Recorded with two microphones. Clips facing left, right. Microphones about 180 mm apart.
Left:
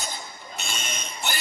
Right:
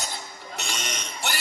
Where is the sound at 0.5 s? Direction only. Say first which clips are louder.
Right 1 dB; 80° right.